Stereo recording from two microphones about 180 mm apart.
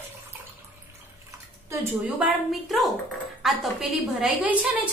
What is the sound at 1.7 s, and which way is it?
Speech, 15° right (ahead or behind).